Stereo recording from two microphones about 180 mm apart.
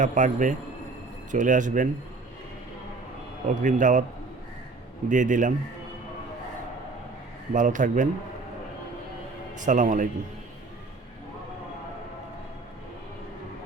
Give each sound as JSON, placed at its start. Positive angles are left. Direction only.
{"t": 0.0, "sound": "speech", "side_deg": -45}
{"t": 3.5, "sound": "speech", "side_deg": -45}
{"t": 5.0, "sound": "speech", "side_deg": -45}
{"t": 7.5, "sound": "speech", "side_deg": -45}
{"t": 9.6, "sound": "speech", "side_deg": -45}